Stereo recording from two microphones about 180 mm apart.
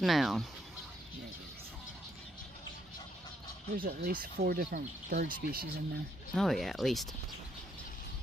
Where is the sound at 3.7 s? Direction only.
55° right (ahead or behind).